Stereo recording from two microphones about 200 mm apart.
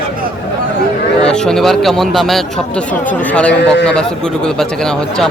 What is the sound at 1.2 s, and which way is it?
Speech, 5° left (ahead or behind).